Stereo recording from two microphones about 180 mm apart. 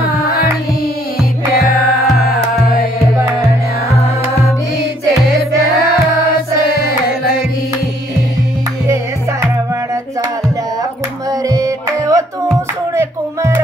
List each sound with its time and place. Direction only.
2.1 s music: 55° left (ahead or behind)
6.8 s music: 55° left (ahead or behind)
11.4 s music: 20° right (ahead or behind)